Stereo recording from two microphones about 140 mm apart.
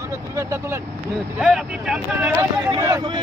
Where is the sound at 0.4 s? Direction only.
20° right (ahead or behind).